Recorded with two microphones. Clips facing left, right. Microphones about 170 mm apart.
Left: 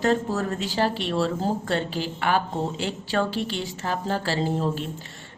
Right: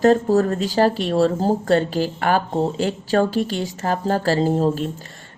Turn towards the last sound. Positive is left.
turn(degrees=-40)  # may be behind; listen again after turning